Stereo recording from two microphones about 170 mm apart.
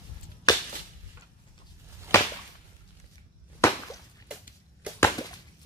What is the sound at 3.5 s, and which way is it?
Whip, 15° left (ahead or behind).